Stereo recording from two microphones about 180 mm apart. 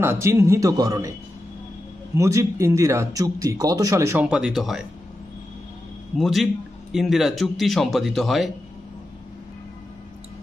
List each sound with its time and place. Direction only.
0.0 s speech: 15° right (ahead or behind)
2.1 s speech: 15° right (ahead or behind)
4.3 s a man's voice: 5° right (ahead or behind)
6.1 s a man's voice: centre (ahead or behind)